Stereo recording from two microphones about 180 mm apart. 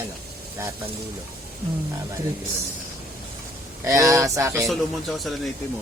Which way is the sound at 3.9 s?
15° right (ahead or behind).